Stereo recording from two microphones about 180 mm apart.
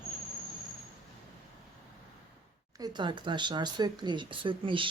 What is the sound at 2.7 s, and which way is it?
Speech, 25° right (ahead or behind).